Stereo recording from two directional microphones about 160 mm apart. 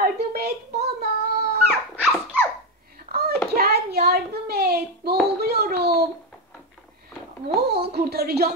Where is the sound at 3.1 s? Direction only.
75° right (ahead or behind).